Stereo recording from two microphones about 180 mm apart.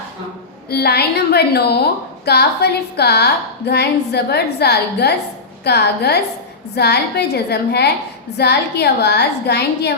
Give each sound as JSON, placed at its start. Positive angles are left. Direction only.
{"t": 0.7, "sound": "a woman's voice", "side_deg": 60}